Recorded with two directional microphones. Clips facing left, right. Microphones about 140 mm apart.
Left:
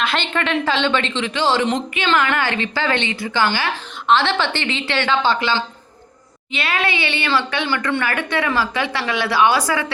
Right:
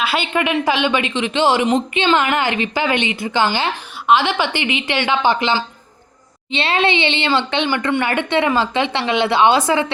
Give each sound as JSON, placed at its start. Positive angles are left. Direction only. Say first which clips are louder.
{"t": 0.0, "sound": "a woman's voice", "louder": "right 2 dB", "side_deg": -5}